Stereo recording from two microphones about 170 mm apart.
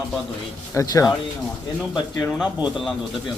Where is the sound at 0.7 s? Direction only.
20° left (ahead or behind).